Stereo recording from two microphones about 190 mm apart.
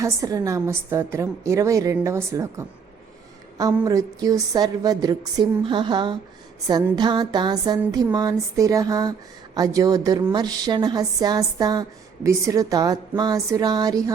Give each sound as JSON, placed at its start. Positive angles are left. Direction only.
{"t": 0.0, "sound": "a woman's voice", "side_deg": -15}